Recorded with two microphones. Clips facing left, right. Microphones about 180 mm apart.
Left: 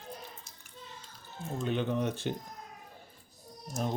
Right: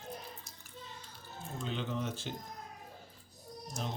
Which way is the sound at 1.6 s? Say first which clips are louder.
Left 7 dB; 60° left (ahead or behind).